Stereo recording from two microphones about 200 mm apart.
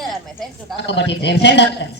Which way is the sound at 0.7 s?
60° left (ahead or behind).